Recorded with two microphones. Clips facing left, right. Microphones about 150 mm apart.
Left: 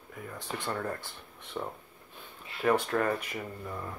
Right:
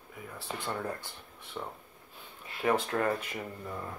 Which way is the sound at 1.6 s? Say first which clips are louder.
Left 3 dB; 10° left (ahead or behind).